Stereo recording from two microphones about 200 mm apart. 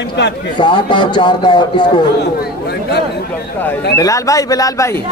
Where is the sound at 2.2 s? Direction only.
55° left (ahead or behind).